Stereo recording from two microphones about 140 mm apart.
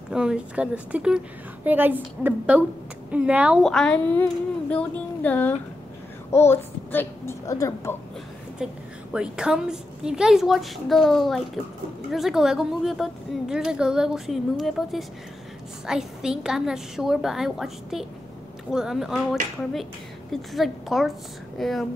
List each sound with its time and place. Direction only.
0.1 s a woman's voice: 5° right (ahead or behind)
3.6 s speech: 5° left (ahead or behind); by 7.9 s 20° left (ahead or behind)
8.6 s a woman's voice: 5° right (ahead or behind)